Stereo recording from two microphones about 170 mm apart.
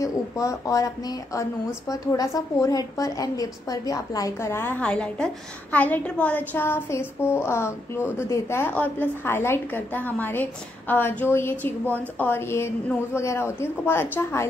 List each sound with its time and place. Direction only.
0.0 s a woman's voice: 20° left (ahead or behind)